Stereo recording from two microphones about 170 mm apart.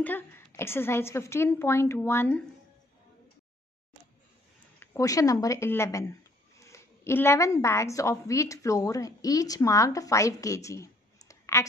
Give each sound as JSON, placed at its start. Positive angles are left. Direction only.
{"t": 0.0, "sound": "a woman's voice", "side_deg": 10}
{"t": 4.7, "sound": "a woman's voice", "side_deg": 20}